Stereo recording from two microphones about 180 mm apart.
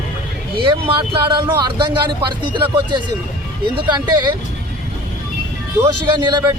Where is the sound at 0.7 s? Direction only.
30° right (ahead or behind).